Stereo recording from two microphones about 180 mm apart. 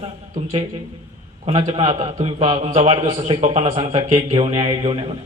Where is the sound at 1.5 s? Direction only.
30° right (ahead or behind).